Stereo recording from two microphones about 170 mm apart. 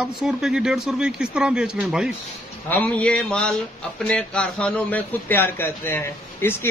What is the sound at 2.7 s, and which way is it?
A man's voice, 10° left (ahead or behind).